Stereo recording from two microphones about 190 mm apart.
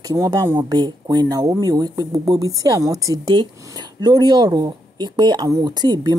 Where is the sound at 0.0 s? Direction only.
20° right (ahead or behind).